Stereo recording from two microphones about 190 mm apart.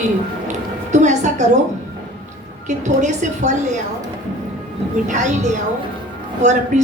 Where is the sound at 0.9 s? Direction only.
40° right (ahead or behind).